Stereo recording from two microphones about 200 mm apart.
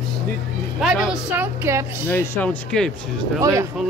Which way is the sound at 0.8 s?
5° right (ahead or behind).